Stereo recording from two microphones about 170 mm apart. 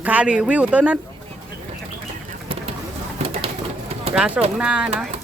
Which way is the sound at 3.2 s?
35° right (ahead or behind).